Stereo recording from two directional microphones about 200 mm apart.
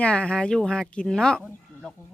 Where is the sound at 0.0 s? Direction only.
5° left (ahead or behind).